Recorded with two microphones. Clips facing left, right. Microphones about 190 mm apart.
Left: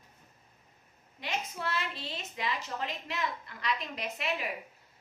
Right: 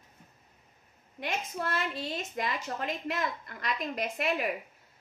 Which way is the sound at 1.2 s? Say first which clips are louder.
Right 2 dB; 50° right (ahead or behind).